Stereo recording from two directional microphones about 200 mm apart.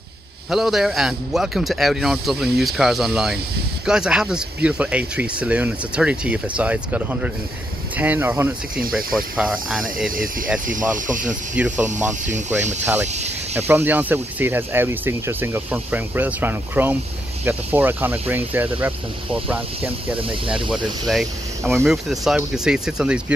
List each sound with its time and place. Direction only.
0.5 s a man's voice: centre (ahead or behind)
10.0 s speech: 45° right (ahead or behind)
11.5 s speech: 5° right (ahead or behind)
12.1 s speech: 35° right (ahead or behind)
13.6 s a man's voice: 10° right (ahead or behind)